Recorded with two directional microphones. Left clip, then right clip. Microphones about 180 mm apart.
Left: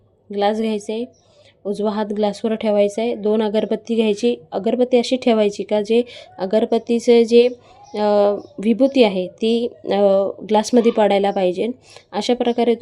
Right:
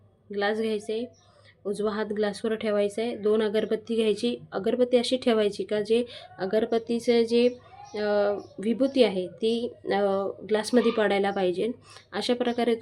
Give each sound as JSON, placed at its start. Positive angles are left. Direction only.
{"t": 0.3, "sound": "speech", "side_deg": 30}